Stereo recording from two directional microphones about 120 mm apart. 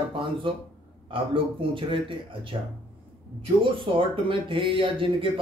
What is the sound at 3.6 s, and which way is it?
Speech, 45° right (ahead or behind).